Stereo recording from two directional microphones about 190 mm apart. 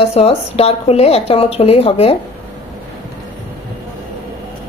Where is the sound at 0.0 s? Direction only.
30° left (ahead or behind).